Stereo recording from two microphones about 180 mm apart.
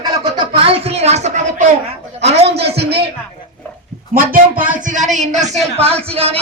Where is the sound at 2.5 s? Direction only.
65° right (ahead or behind).